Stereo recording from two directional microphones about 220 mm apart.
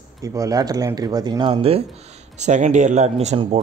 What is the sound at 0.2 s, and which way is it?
Speech, 15° right (ahead or behind).